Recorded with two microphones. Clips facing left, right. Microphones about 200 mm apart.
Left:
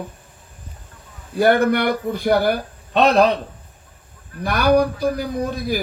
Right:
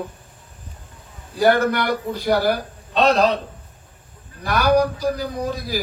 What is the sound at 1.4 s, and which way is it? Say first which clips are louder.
A man's voice: left 2 dB; 55° left (ahead or behind).